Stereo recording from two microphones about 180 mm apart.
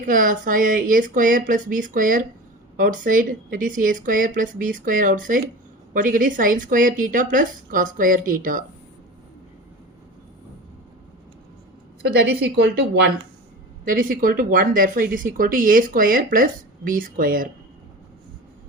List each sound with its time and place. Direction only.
0.0 s speech: 50° right (ahead or behind)
12.3 s speech: 75° right (ahead or behind)
13.8 s speech: 50° right (ahead or behind)